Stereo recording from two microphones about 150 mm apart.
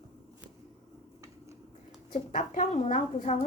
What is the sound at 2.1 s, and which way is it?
A woman's voice, 55° left (ahead or behind).